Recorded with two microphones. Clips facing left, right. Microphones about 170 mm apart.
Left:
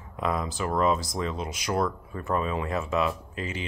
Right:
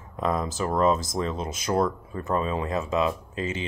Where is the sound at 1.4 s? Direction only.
25° right (ahead or behind).